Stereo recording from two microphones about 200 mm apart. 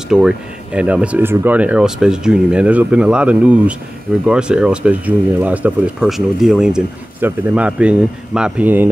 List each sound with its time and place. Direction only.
0.1 s speech: 5° right (ahead or behind)